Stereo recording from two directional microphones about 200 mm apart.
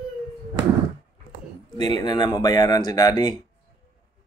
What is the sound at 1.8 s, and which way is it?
Speech, 20° left (ahead or behind).